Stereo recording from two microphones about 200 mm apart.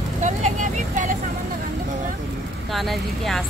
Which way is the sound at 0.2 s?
40° right (ahead or behind).